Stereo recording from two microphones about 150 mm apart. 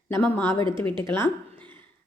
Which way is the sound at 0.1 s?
15° left (ahead or behind).